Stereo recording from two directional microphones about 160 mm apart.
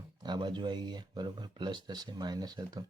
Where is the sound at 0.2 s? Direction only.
25° right (ahead or behind).